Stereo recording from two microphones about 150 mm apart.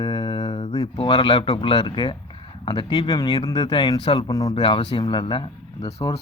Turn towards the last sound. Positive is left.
turn(degrees=40)  # may be behind; listen again after turning